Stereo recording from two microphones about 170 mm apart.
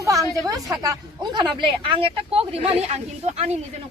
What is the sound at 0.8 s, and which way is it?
A woman's voice, 25° right (ahead or behind).